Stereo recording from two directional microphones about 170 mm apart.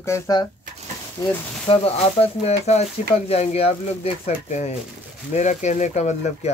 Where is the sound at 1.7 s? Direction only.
35° left (ahead or behind).